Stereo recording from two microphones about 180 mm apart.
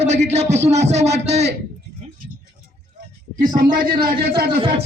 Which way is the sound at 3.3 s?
50° right (ahead or behind).